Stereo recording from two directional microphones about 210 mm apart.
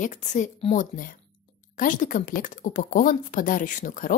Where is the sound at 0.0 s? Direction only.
35° left (ahead or behind).